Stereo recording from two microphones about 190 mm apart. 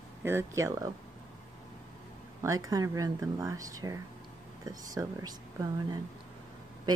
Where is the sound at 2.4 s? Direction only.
15° right (ahead or behind).